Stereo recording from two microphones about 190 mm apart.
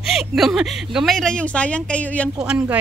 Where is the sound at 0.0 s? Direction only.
Centre (ahead or behind).